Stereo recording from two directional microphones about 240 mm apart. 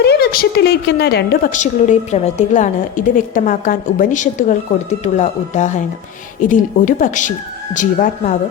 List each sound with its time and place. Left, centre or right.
0.0 s a woman's voice: left